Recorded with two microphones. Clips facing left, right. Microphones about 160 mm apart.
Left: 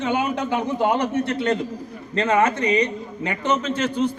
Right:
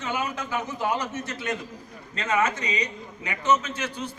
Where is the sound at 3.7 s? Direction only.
55° left (ahead or behind).